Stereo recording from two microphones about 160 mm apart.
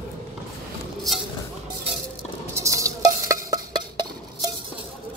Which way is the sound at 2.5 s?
20° right (ahead or behind).